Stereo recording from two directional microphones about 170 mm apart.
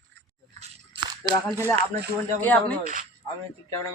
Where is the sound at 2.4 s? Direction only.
10° left (ahead or behind).